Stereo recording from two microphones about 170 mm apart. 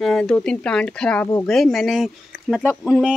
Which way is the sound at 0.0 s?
5° left (ahead or behind).